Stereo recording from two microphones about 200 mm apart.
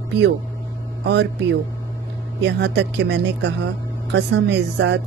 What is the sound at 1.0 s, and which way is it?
Speech, 60° right (ahead or behind).